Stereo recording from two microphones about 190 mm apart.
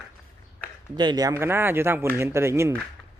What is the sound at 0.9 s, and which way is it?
Speech, 20° right (ahead or behind).